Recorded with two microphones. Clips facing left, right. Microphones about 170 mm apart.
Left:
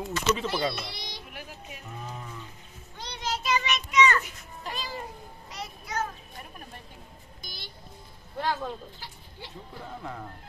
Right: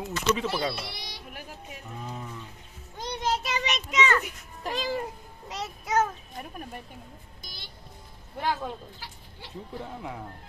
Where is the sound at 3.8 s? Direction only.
90° right.